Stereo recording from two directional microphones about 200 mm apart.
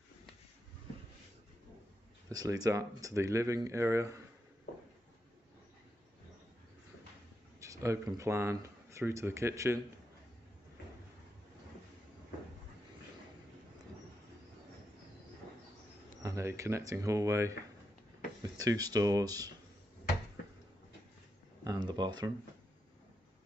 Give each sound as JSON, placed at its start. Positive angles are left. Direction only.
{"t": 2.2, "sound": "speech", "side_deg": -20}
{"t": 7.6, "sound": "speech", "side_deg": -15}
{"t": 16.2, "sound": "speech", "side_deg": -15}
{"t": 21.6, "sound": "a sound", "side_deg": -20}